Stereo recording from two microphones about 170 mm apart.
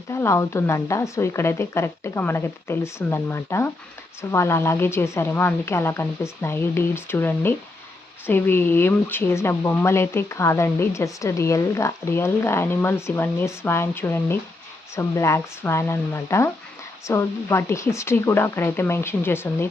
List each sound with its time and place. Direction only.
0.1 s speech: 15° left (ahead or behind)